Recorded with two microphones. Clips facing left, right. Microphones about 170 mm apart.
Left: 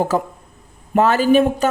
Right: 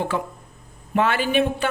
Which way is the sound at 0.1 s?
40° left (ahead or behind).